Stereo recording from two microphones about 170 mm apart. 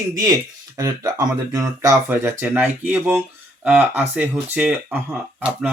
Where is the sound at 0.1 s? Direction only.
20° right (ahead or behind).